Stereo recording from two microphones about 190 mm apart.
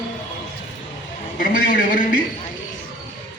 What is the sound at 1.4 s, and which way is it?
Speech, 45° left (ahead or behind).